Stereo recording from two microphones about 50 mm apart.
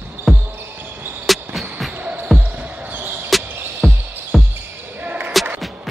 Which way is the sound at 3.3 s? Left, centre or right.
Centre.